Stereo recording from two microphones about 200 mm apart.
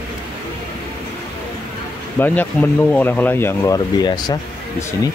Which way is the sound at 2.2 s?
10° left (ahead or behind).